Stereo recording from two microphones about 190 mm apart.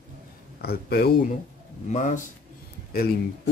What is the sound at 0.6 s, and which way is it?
Speech, 55° left (ahead or behind).